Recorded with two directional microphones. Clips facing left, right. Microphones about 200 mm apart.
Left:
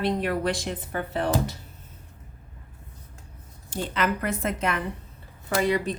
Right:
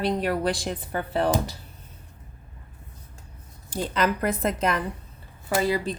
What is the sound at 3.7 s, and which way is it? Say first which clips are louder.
A woman's voice: right 2 dB; 35° right (ahead or behind).